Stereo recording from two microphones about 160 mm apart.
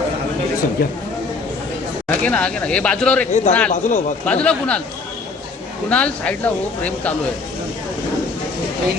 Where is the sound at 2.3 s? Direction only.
5° left (ahead or behind).